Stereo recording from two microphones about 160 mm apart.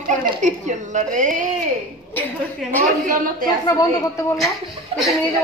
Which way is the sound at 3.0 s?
60° right (ahead or behind).